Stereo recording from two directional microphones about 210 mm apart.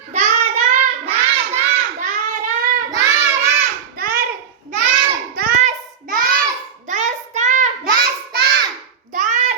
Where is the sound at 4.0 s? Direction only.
45° right (ahead or behind).